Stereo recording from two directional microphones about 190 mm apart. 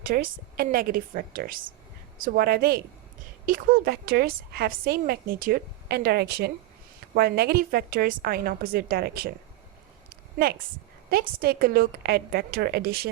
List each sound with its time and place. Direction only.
0.0 s a woman's voice: 50° right (ahead or behind)
10.3 s a woman's voice: 55° right (ahead or behind)